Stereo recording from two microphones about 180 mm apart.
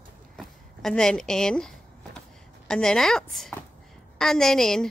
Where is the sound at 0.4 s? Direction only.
5° left (ahead or behind).